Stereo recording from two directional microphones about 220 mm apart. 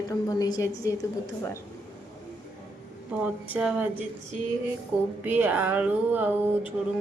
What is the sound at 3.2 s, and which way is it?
Speech, 5° right (ahead or behind).